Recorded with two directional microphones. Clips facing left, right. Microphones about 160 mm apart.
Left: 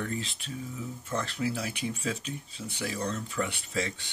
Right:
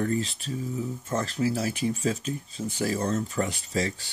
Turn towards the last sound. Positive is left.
turn(degrees=-35)  # may be behind; listen again after turning